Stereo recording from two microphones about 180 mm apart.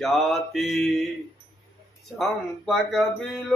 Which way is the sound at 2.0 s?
Centre (ahead or behind).